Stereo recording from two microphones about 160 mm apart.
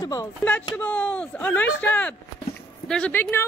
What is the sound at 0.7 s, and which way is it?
A woman's voice, 10° left (ahead or behind).